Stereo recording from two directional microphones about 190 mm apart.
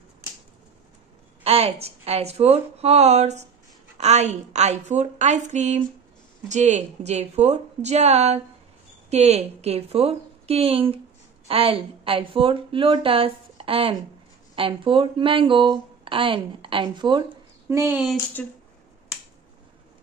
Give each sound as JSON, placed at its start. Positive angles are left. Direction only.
{"t": 1.4, "sound": "a woman's voice", "side_deg": -30}
{"t": 17.6, "sound": "speech", "side_deg": -10}
{"t": 18.4, "sound": "speech", "side_deg": 10}